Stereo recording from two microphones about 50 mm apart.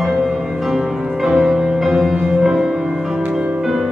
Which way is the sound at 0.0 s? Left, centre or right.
Centre.